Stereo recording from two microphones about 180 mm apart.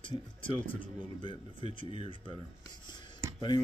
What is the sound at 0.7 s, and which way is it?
Speech, 30° left (ahead or behind).